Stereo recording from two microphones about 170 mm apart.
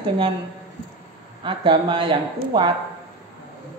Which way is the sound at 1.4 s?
30° right (ahead or behind).